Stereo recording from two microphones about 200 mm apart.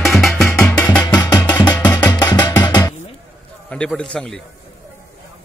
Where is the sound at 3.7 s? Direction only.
5° left (ahead or behind).